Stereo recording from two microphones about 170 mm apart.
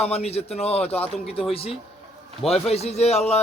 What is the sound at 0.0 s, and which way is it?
A man's voice, 40° left (ahead or behind).